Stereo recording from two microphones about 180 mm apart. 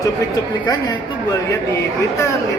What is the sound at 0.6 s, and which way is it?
Speech, 20° left (ahead or behind).